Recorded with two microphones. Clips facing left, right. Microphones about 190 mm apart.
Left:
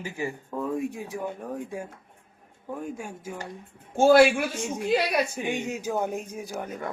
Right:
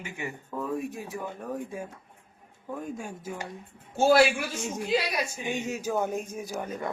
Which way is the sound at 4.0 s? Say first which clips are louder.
Left 4 dB; 55° left (ahead or behind).